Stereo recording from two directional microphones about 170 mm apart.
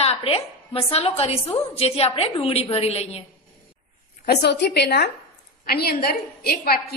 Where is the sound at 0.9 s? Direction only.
35° left (ahead or behind).